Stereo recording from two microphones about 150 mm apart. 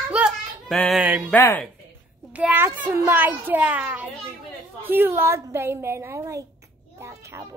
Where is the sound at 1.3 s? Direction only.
15° left (ahead or behind).